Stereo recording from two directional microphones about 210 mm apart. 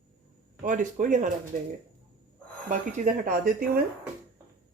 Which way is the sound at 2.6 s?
40° right (ahead or behind).